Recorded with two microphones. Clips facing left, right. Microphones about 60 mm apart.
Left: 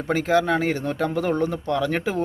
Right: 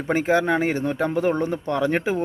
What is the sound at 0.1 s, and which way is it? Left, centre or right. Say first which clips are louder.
Speech: even; right.